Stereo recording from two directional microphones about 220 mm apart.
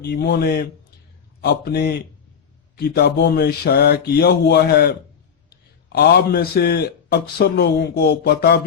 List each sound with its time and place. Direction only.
0.0 s a man's voice: 50° left (ahead or behind)